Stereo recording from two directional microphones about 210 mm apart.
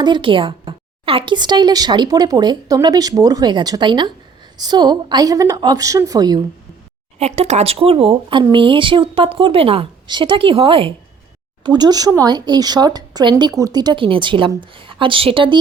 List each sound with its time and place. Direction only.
0.0 s a woman's voice: 25° right (ahead or behind)
7.2 s a woman's voice: 30° right (ahead or behind)